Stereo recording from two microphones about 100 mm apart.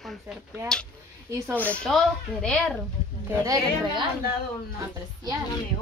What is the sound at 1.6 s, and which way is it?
Speech, 15° left (ahead or behind).